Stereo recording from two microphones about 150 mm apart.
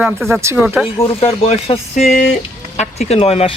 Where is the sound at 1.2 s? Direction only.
45° left (ahead or behind).